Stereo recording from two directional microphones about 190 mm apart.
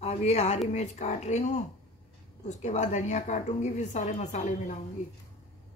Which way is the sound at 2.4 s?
40° left (ahead or behind).